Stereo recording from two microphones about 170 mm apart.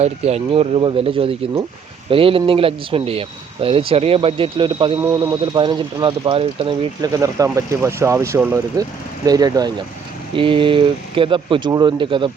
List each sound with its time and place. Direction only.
0.0 s speech: 40° right (ahead or behind)
7.0 s speech: 20° right (ahead or behind)